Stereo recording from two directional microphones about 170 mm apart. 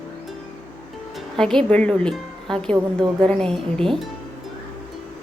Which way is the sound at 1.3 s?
5° left (ahead or behind).